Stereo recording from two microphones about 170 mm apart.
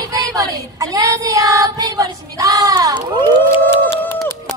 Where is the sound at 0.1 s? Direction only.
20° right (ahead or behind).